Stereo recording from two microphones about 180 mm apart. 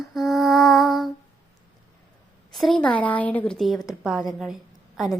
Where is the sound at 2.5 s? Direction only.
Centre (ahead or behind).